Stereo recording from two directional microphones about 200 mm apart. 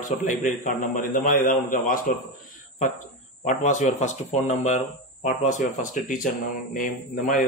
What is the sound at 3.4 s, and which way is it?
Speech, 35° left (ahead or behind).